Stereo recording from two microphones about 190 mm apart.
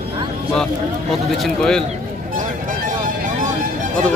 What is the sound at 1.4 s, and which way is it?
Speech, 5° left (ahead or behind).